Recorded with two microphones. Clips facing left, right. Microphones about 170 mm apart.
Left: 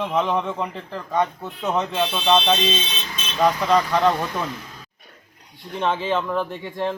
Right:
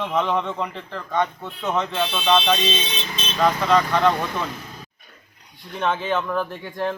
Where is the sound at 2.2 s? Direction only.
15° left (ahead or behind).